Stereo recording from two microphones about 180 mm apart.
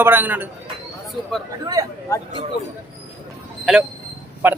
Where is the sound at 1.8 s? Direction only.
20° right (ahead or behind).